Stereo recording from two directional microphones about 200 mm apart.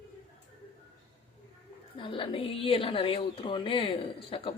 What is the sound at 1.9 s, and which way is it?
A woman's voice, 25° left (ahead or behind).